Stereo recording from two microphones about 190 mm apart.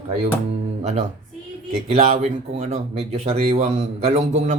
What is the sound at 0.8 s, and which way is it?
Speech, 35° right (ahead or behind).